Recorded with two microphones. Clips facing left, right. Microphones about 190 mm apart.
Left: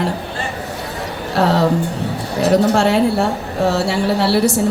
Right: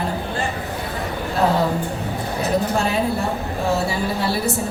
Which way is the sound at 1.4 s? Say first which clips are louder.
Left 3 dB; 85° left.